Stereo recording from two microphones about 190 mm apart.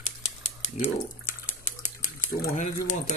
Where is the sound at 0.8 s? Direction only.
40° left (ahead or behind).